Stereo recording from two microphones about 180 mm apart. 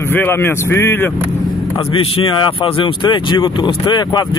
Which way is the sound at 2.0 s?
25° left (ahead or behind).